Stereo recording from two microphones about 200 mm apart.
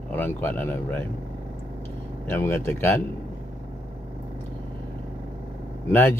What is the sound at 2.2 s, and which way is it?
Speech, 10° left (ahead or behind).